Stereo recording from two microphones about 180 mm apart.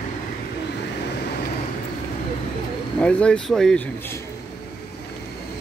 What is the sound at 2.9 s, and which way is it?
Speech, 5° left (ahead or behind).